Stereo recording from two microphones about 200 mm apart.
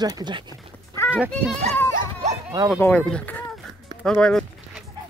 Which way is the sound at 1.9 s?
20° right (ahead or behind).